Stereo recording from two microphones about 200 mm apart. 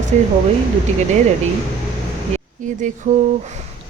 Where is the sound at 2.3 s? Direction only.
35° right (ahead or behind).